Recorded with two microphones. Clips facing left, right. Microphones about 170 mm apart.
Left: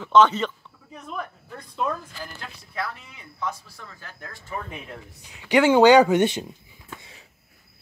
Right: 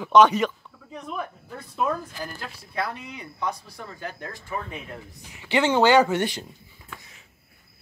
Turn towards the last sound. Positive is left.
turn(degrees=20)  # may be behind; listen again after turning